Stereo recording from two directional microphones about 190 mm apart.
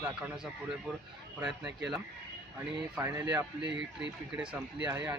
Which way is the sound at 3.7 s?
70° right (ahead or behind).